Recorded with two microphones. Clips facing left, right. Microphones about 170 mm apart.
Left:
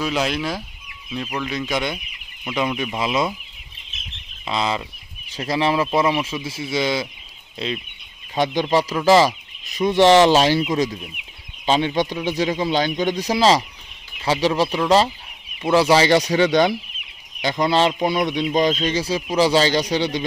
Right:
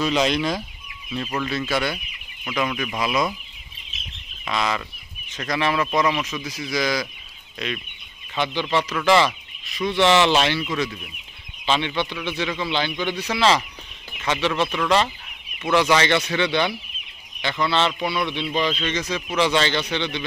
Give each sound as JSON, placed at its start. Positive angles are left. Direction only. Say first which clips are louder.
{"t": 0.0, "sound": "chicken", "louder": "right 2 dB", "side_deg": 5}
{"t": 1.1, "sound": "speech", "louder": "even", "side_deg": 5}
{"t": 1.5, "sound": "chicken", "louder": "left 1 dB", "side_deg": 15}
{"t": 2.5, "sound": "speech", "louder": "left 2 dB", "side_deg": 20}
{"t": 4.5, "sound": "speech", "louder": "left 2 dB", "side_deg": 25}
{"t": 8.4, "sound": "speech", "louder": "left 4 dB", "side_deg": 40}
{"t": 11.6, "sound": "speech", "louder": "left 4 dB", "side_deg": 40}